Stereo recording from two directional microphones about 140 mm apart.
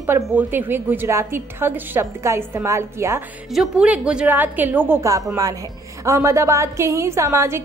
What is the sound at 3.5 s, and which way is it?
A woman's voice, 5° right (ahead or behind).